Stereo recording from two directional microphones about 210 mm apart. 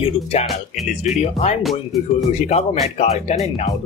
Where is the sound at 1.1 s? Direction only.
30° left (ahead or behind).